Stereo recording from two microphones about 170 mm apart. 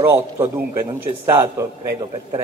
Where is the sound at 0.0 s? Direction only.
15° right (ahead or behind).